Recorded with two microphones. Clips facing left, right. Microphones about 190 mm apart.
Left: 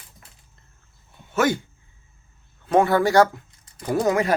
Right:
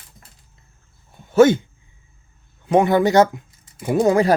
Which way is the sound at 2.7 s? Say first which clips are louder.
Right 3 dB; 20° right (ahead or behind).